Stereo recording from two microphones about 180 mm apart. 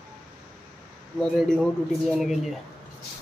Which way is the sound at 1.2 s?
5° left (ahead or behind).